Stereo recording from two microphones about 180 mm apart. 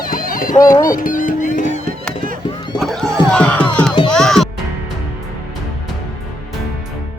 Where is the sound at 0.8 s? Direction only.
50° left (ahead or behind).